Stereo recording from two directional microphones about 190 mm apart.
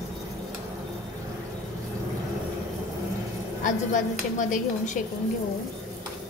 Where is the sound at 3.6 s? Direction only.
40° left (ahead or behind).